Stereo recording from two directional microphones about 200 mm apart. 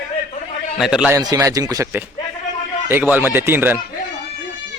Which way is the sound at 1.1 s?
15° right (ahead or behind).